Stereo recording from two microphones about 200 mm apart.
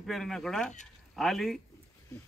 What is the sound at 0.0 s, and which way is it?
Speech, centre (ahead or behind).